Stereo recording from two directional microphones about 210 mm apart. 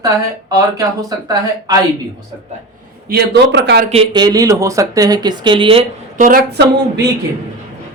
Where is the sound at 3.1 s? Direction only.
50° right (ahead or behind).